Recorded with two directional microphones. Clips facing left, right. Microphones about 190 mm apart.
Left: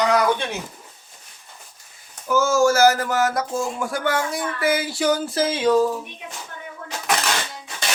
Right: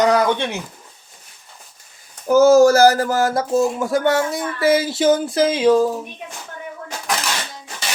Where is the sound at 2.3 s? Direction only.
40° right (ahead or behind); by 5.8 s 20° right (ahead or behind).